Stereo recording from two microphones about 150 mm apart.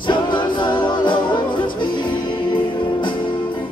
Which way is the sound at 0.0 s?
30° left (ahead or behind).